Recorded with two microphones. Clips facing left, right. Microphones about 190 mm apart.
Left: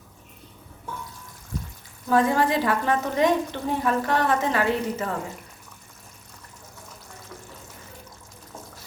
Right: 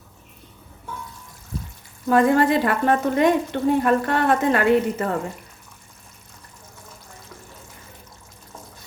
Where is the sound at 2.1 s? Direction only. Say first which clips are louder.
Right 4 dB; 55° right (ahead or behind).